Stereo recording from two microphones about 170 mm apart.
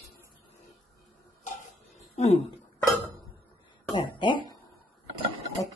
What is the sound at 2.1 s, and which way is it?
Speech, 40° left (ahead or behind).